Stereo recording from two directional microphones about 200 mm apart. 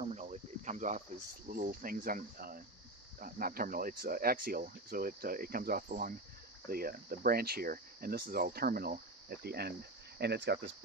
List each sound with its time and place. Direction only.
0.0 s cricket: 35° right (ahead or behind)
1.5 s speech: 45° right (ahead or behind)